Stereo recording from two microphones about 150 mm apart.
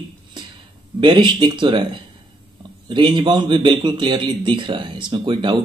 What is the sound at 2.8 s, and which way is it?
Speech, 30° right (ahead or behind).